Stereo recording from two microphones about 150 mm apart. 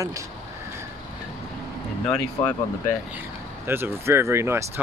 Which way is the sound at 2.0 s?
5° left (ahead or behind).